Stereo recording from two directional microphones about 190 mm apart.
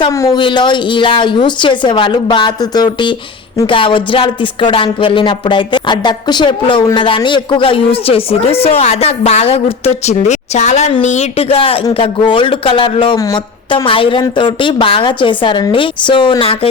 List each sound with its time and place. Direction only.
0.0 s speech: 15° left (ahead or behind)
0.3 s music: 25° left (ahead or behind)